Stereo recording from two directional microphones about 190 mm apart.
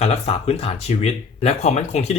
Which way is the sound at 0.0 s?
30° left (ahead or behind).